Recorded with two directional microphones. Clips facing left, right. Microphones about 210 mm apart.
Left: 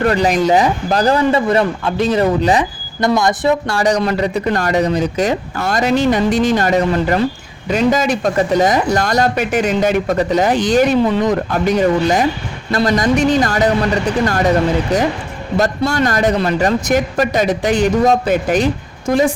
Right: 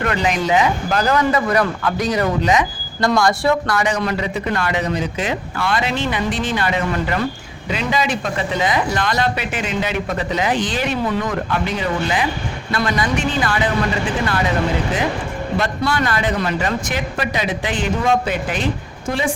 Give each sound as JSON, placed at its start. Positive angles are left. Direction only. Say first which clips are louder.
{"t": 0.0, "sound": "speech", "louder": "left 6 dB", "side_deg": 35}
{"t": 3.2, "sound": "speech", "louder": "even", "side_deg": 20}
{"t": 3.8, "sound": "speech", "louder": "left 5 dB", "side_deg": 35}
{"t": 15.5, "sound": "speech", "louder": "left 5 dB", "side_deg": 40}